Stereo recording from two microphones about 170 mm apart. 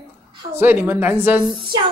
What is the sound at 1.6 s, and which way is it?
Speech, 25° right (ahead or behind).